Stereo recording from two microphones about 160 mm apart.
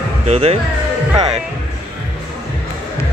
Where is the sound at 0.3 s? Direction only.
40° right (ahead or behind).